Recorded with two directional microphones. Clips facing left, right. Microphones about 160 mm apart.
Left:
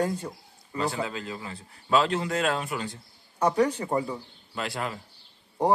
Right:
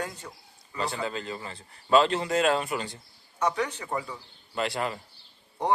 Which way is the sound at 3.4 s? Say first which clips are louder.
Left 5 dB; 35° left (ahead or behind).